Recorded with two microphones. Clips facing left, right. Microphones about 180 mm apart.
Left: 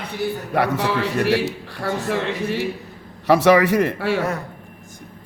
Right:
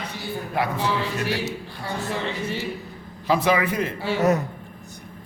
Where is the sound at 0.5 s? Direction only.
70° left (ahead or behind).